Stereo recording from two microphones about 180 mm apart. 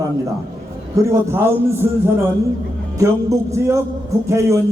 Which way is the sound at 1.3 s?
15° right (ahead or behind).